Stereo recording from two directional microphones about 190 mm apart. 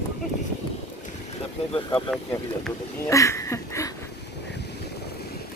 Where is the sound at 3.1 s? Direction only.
15° left (ahead or behind).